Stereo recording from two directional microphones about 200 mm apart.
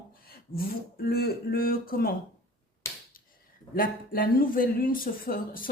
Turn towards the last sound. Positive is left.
turn(degrees=45)  # may be behind; listen again after turning